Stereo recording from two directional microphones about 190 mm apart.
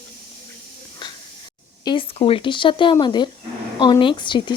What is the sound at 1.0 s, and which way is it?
Spray, 20° left (ahead or behind).